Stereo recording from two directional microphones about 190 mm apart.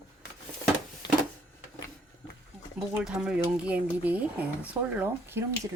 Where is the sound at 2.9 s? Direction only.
5° right (ahead or behind).